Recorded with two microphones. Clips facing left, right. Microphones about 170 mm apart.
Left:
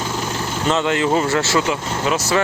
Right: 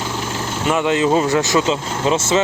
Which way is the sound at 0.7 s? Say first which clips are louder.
Right 2 dB; 20° right (ahead or behind).